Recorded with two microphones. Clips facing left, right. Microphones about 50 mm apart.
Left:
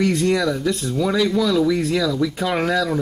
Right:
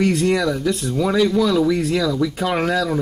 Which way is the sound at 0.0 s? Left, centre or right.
Centre.